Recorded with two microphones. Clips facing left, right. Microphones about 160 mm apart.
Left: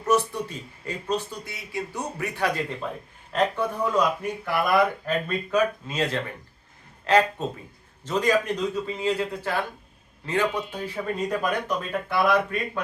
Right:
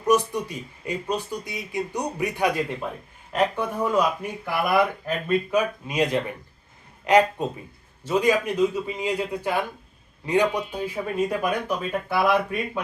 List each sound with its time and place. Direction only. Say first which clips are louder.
0.0 s speech: right 2 dB; 15° right (ahead or behind)